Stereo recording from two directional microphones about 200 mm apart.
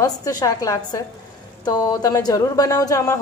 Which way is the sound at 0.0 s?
20° left (ahead or behind).